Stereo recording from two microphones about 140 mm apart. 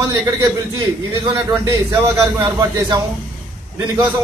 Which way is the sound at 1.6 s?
25° right (ahead or behind).